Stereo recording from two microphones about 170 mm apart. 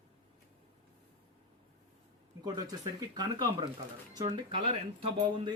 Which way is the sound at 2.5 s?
20° right (ahead or behind).